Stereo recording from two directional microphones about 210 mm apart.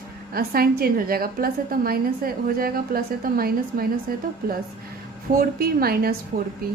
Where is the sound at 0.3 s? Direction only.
45° right (ahead or behind).